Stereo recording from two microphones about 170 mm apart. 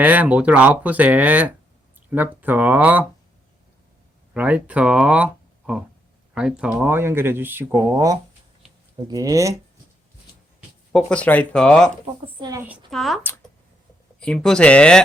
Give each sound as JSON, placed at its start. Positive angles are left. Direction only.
{"t": 0.0, "sound": "speech", "side_deg": -10}
{"t": 4.4, "sound": "speech", "side_deg": -10}
{"t": 10.9, "sound": "speech", "side_deg": 5}
{"t": 12.4, "sound": "speech", "side_deg": -20}
{"t": 12.9, "sound": "speech", "side_deg": 0}